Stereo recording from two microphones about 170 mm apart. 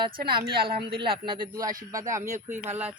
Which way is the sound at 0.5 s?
65° right (ahead or behind).